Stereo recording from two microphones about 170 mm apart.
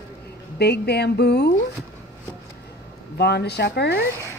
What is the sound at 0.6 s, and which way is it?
Speech, 75° left (ahead or behind).